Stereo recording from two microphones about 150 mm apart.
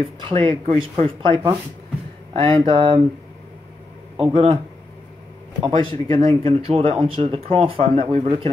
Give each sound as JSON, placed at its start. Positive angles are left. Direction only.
{"t": 0.0, "sound": "speech", "side_deg": -40}
{"t": 2.6, "sound": "speech", "side_deg": -35}
{"t": 4.2, "sound": "speech", "side_deg": -35}